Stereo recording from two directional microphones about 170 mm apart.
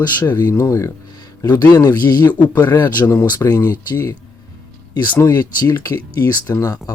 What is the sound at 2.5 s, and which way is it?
Speech, 10° left (ahead or behind).